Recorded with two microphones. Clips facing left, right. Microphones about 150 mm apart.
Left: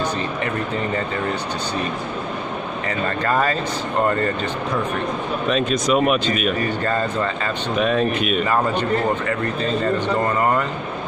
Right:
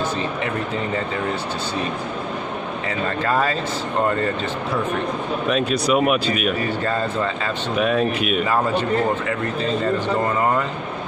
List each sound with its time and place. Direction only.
2.9 s speech: 5° right (ahead or behind)
5.5 s speech: 10° right (ahead or behind)